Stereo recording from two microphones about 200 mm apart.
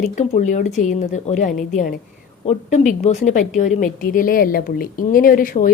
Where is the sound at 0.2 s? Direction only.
35° left (ahead or behind).